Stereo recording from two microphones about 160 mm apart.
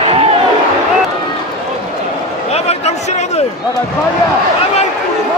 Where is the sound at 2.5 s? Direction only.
40° left (ahead or behind).